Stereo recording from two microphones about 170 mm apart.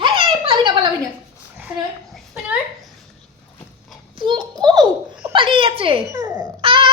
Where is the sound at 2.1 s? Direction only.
5° right (ahead or behind).